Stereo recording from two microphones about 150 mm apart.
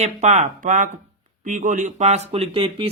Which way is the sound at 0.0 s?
50° right (ahead or behind).